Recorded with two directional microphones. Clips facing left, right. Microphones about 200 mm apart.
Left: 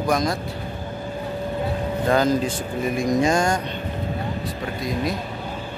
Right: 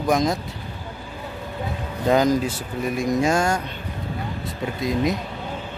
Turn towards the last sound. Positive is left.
turn(degrees=-20)  # may be behind; listen again after turning